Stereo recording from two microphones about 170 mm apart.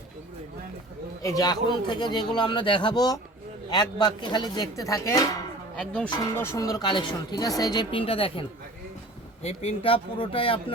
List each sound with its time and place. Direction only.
1.2 s speech: 20° left (ahead or behind)
5.7 s speech: 5° left (ahead or behind); by 10.8 s 30° left (ahead or behind)